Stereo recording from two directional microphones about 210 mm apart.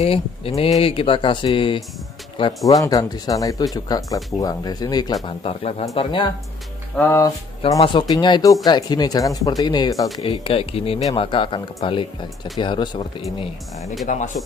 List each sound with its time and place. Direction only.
0.0 s speech: 30° left (ahead or behind)
14.0 s speech: 35° left (ahead or behind)